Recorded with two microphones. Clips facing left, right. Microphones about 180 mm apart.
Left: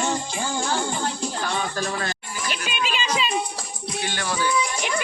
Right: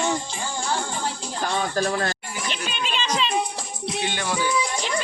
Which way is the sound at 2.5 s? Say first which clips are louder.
Left 2 dB; 5° left (ahead or behind).